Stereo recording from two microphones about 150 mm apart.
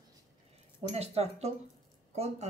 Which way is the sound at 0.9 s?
45° right (ahead or behind).